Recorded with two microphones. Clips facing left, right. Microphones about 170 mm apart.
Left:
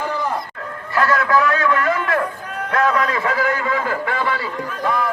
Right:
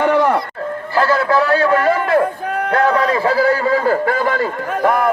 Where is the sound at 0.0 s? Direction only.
70° right (ahead or behind).